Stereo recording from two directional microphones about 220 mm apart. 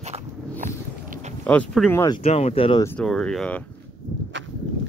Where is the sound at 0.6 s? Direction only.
35° right (ahead or behind).